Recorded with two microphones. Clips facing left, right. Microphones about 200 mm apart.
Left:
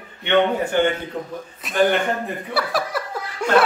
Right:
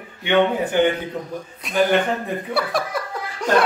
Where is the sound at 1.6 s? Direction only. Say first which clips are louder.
Even; centre (ahead or behind).